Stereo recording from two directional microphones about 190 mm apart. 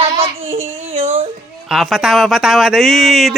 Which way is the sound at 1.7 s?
Centre (ahead or behind).